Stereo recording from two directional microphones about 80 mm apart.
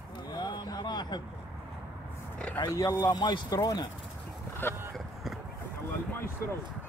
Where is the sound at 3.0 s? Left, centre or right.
Left.